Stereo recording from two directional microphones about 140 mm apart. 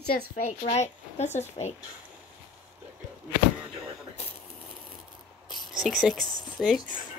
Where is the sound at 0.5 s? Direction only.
55° left (ahead or behind).